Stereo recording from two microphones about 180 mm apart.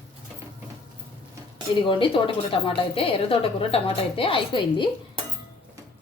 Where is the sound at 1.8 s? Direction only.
30° left (ahead or behind).